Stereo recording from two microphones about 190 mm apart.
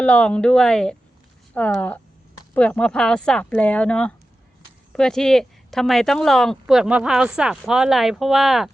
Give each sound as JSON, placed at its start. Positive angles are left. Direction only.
{"t": 0.0, "sound": "speech", "side_deg": 5}